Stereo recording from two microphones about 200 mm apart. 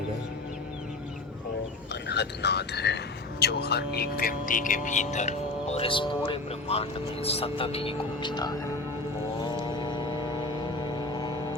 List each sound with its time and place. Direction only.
2.0 s speech: 55° left (ahead or behind); by 8.7 s 20° left (ahead or behind)
9.4 s vehicle: 20° left (ahead or behind)